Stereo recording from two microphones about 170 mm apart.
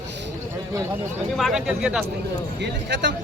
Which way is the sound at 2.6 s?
90° right.